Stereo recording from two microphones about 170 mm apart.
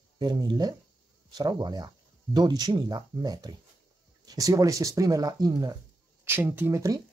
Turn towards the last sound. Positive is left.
turn(degrees=-20)  # may be behind; listen again after turning